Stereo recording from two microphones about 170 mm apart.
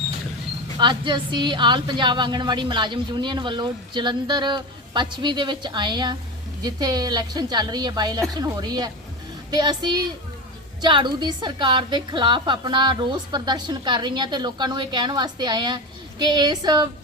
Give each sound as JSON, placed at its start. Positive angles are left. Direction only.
{"t": 0.8, "sound": "a woman's voice", "side_deg": -25}